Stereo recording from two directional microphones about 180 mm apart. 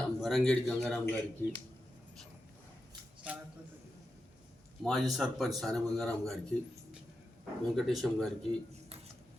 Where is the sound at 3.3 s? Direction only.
5° right (ahead or behind).